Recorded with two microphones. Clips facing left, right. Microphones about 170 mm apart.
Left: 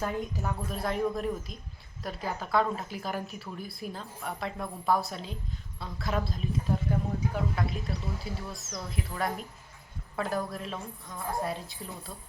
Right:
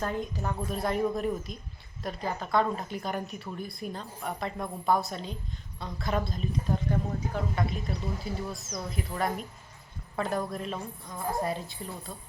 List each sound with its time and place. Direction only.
0.0 s a woman's voice: centre (ahead or behind)